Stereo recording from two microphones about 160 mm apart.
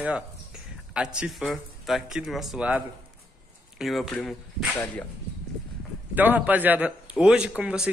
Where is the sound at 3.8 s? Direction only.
Centre (ahead or behind).